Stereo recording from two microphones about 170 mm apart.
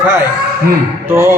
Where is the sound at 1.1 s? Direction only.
15° right (ahead or behind).